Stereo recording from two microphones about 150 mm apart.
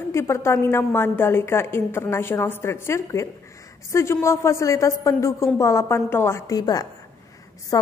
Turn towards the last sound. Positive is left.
turn(degrees=25)  # may be behind; listen again after turning